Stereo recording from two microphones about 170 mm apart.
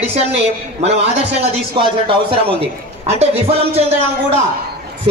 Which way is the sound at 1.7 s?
30° right (ahead or behind).